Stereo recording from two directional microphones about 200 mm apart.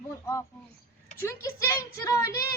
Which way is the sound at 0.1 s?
15° left (ahead or behind).